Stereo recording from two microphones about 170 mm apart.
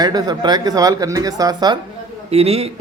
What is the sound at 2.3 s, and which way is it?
Speech, 35° right (ahead or behind).